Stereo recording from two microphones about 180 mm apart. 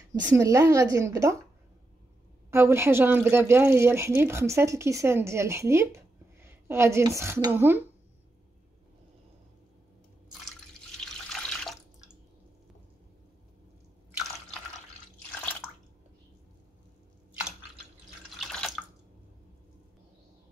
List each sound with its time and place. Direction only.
0.1 s speech: 20° right (ahead or behind)
2.5 s speech: 15° right (ahead or behind)
11.0 s water: 5° left (ahead or behind)
18.4 s drip: 5° left (ahead or behind)